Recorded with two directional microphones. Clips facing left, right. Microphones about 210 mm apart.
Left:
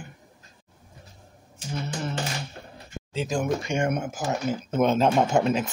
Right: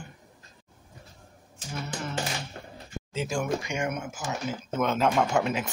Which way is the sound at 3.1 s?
35° left (ahead or behind).